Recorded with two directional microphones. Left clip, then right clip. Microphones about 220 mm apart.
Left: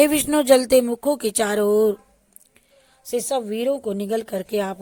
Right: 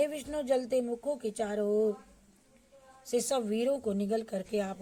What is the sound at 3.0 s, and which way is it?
Speech, 30° left (ahead or behind).